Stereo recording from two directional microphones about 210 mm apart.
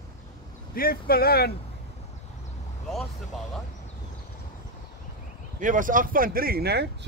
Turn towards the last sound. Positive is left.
turn(degrees=-50)  # may be behind; listen again after turning